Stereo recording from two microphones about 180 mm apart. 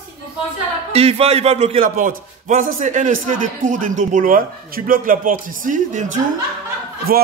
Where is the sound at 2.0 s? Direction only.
45° right (ahead or behind).